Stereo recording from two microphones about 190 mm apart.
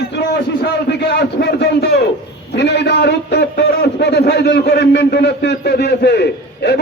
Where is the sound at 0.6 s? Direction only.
60° left (ahead or behind).